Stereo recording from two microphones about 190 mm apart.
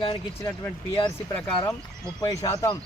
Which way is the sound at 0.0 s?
25° left (ahead or behind).